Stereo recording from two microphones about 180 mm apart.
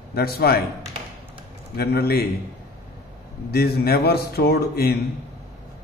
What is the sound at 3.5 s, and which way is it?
Speech, 60° left (ahead or behind).